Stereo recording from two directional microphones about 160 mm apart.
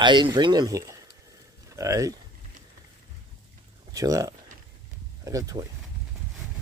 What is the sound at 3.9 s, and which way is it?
Speech, 20° right (ahead or behind).